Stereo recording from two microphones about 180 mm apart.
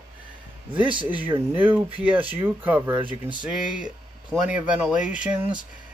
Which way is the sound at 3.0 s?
25° right (ahead or behind).